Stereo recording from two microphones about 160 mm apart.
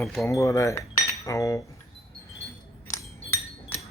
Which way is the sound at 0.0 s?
Centre (ahead or behind).